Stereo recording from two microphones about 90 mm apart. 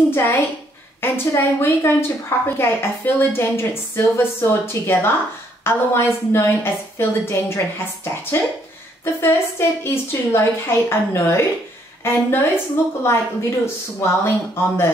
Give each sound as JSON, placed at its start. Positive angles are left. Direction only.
{"t": 0.1, "sound": "a woman's voice", "side_deg": 25}